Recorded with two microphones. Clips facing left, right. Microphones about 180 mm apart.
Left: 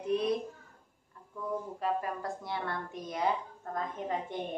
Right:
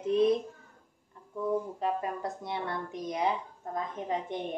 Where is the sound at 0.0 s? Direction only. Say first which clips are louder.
Right 5 dB; 20° right (ahead or behind).